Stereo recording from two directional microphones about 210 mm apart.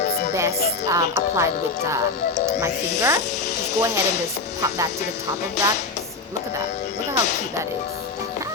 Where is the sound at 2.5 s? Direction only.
15° right (ahead or behind).